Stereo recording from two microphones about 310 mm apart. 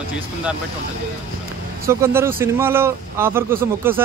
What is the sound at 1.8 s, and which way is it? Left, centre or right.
Speech, centre.